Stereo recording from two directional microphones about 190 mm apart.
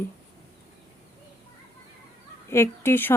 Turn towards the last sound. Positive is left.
turn(degrees=10)  # may be behind; listen again after turning